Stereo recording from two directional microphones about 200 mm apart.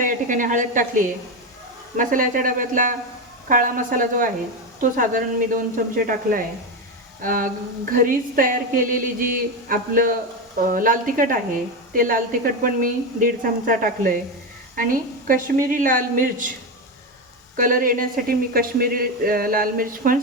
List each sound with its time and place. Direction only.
0.0 s a woman's voice: 40° right (ahead or behind)
17.6 s speech: 45° right (ahead or behind)